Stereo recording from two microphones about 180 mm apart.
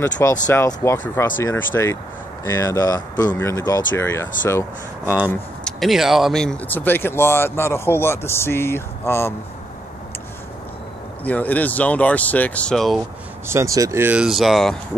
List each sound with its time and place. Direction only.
0.5 s speech: 15° left (ahead or behind)
5.0 s speech: 10° right (ahead or behind)
5.6 s speech: 5° left (ahead or behind)
11.2 s speech: 10° left (ahead or behind)
13.5 s speech: 15° right (ahead or behind); by 14.8 s centre (ahead or behind)